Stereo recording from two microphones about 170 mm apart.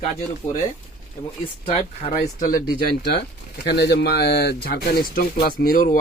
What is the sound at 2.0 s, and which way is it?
Speech, 50° left (ahead or behind).